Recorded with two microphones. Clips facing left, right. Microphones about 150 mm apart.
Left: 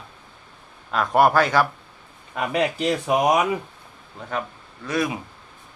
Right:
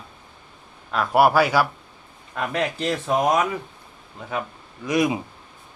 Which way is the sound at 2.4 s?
5° left (ahead or behind).